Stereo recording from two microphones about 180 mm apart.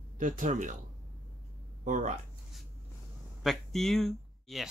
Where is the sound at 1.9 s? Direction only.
45° right (ahead or behind).